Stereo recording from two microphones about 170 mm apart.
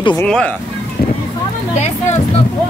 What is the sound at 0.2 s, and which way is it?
Speech, 5° left (ahead or behind).